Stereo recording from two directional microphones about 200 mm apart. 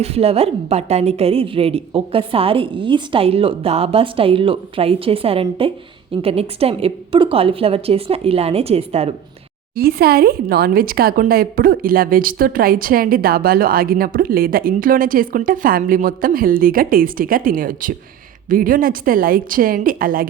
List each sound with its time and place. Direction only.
0.0 s a woman's voice: 30° right (ahead or behind)
9.7 s speech: 50° right (ahead or behind)